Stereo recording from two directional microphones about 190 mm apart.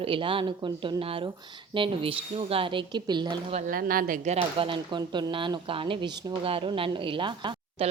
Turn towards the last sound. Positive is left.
turn(degrees=-25)  # may be behind; listen again after turning